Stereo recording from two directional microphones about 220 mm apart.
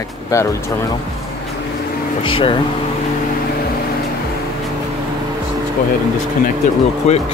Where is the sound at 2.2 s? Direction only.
25° left (ahead or behind).